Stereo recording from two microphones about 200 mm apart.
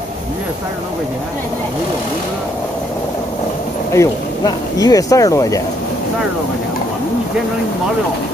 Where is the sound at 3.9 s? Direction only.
15° left (ahead or behind).